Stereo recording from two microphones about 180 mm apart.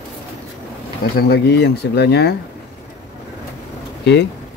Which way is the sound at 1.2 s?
65° left (ahead or behind).